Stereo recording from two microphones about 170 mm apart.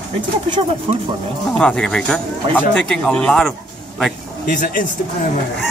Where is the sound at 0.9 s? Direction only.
35° right (ahead or behind).